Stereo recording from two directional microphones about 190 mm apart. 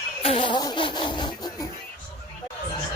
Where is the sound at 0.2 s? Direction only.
30° left (ahead or behind).